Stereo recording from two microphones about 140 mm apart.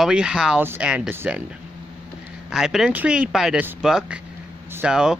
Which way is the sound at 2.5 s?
5° right (ahead or behind).